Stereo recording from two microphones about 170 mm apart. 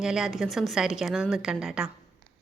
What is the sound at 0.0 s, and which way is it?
A woman's voice, 5° right (ahead or behind).